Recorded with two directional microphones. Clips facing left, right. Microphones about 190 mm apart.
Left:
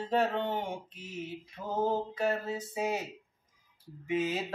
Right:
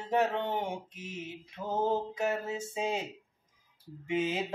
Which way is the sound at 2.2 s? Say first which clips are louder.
Left 1 dB; 20° right (ahead or behind).